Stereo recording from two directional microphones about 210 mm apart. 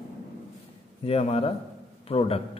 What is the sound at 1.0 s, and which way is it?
Speech, 30° left (ahead or behind).